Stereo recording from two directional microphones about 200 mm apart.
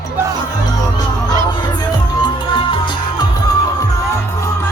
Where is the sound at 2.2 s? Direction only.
25° left (ahead or behind).